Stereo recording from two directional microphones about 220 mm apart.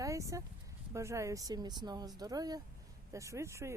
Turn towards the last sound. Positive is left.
turn(degrees=-15)  # may be behind; listen again after turning